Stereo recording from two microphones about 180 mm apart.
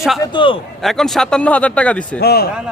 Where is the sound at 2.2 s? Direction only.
60° left (ahead or behind).